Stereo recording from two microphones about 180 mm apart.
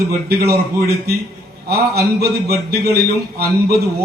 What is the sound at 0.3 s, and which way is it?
A man's voice, 60° right (ahead or behind).